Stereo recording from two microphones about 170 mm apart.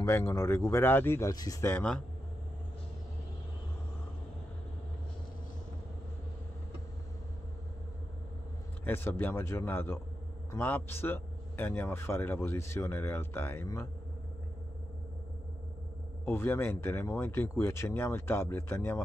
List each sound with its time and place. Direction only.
0.0 s speech: 15° left (ahead or behind)
8.8 s speech: 15° left (ahead or behind)
16.3 s speech: 15° left (ahead or behind)